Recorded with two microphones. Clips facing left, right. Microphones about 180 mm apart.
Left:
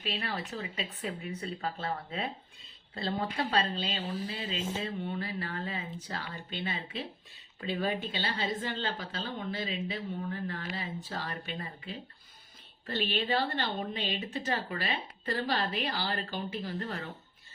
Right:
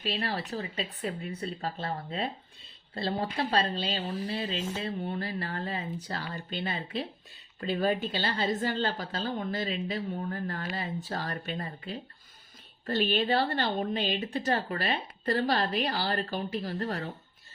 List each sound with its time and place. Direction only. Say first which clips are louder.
0.0 s a woman's voice: right 3 dB; 35° right (ahead or behind)